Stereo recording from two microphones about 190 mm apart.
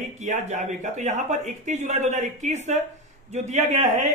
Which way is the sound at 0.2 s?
40° right (ahead or behind).